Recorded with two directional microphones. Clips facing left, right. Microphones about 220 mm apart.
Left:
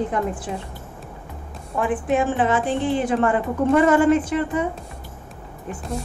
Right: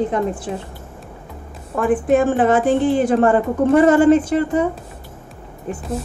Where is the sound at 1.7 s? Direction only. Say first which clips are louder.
Right 5 dB; 45° right (ahead or behind).